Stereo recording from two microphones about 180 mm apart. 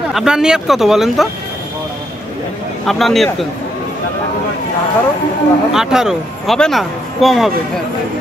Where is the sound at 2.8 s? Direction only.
Centre (ahead or behind).